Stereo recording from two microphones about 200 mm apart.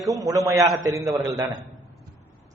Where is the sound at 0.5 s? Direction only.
Centre (ahead or behind).